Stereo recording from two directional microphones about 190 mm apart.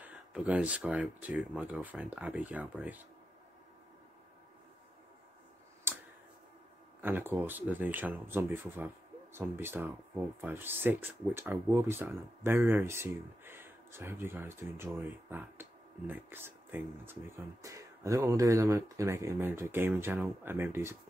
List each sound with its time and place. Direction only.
0.0 s speech: 5° right (ahead or behind)
5.9 s a sound: 10° right (ahead or behind)
7.0 s speech: 10° right (ahead or behind)